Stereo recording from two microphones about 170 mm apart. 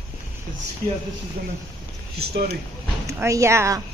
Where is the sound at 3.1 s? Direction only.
20° right (ahead or behind).